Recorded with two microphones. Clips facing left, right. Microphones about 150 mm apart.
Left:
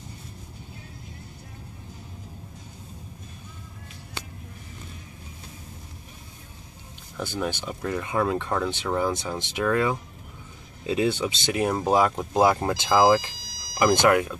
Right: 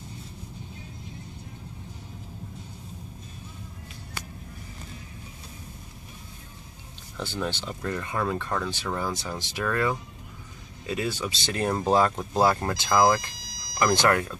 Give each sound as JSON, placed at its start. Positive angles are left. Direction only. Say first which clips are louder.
{"t": 7.2, "sound": "speech", "louder": "left 2 dB", "side_deg": 15}
{"t": 13.1, "sound": "vehicle", "louder": "left 5 dB", "side_deg": 10}
{"t": 14.0, "sound": "speech", "louder": "left 3 dB", "side_deg": 10}